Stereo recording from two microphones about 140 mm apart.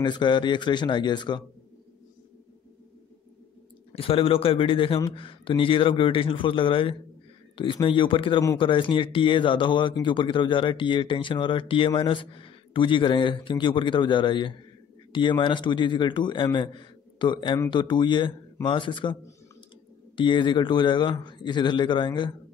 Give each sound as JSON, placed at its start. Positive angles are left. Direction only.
{"t": 0.0, "sound": "speech", "side_deg": 35}
{"t": 3.9, "sound": "speech", "side_deg": 40}
{"t": 20.2, "sound": "speech", "side_deg": 35}